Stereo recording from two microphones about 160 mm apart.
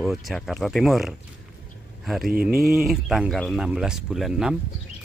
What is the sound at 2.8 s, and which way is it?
Speech, centre (ahead or behind).